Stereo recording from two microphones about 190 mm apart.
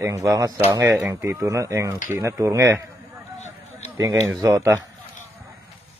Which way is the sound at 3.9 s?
15° right (ahead or behind).